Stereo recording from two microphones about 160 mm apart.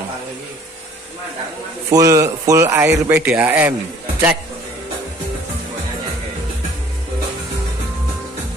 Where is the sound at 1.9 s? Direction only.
20° right (ahead or behind).